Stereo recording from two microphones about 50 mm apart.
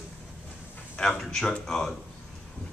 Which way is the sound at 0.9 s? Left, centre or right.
Centre.